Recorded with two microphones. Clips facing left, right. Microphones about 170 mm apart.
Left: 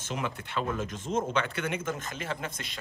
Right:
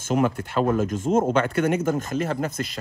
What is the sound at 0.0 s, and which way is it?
Speech, 45° right (ahead or behind).